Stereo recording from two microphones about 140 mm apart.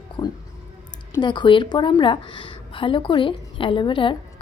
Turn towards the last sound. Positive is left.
turn(degrees=35)  # may be behind; listen again after turning